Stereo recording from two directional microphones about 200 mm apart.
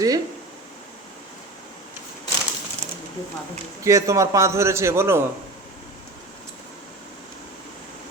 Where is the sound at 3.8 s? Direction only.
15° right (ahead or behind).